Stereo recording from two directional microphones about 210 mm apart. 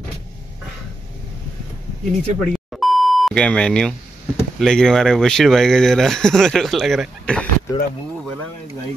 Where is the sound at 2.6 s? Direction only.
Centre (ahead or behind).